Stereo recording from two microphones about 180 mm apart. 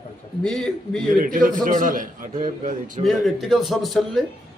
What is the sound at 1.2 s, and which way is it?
A man's voice, 50° right (ahead or behind).